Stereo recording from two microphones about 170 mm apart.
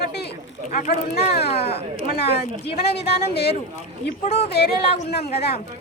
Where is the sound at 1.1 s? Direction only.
70° left (ahead or behind).